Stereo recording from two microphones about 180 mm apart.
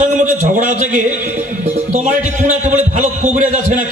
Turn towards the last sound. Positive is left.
turn(degrees=-45)  # may be behind; listen again after turning